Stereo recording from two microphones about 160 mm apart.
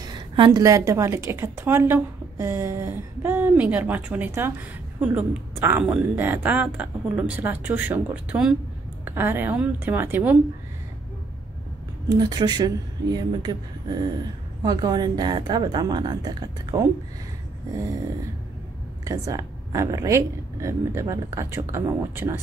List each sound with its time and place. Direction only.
0.0 s a woman's voice: 25° right (ahead or behind)
12.1 s speech: 25° right (ahead or behind)
19.0 s speech: 20° right (ahead or behind)